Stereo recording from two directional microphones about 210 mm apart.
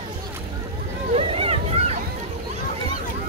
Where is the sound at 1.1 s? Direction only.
30° right (ahead or behind).